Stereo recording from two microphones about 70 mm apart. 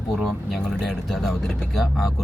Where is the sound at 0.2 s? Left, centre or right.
Centre.